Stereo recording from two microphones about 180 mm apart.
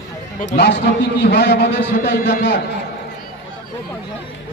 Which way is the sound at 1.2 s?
65° left (ahead or behind).